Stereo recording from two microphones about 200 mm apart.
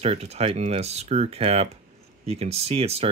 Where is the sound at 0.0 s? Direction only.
30° right (ahead or behind).